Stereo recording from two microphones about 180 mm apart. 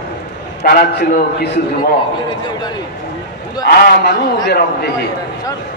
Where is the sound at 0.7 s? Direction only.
55° left (ahead or behind).